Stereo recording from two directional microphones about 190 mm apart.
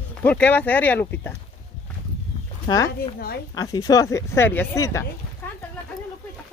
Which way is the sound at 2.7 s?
20° left (ahead or behind).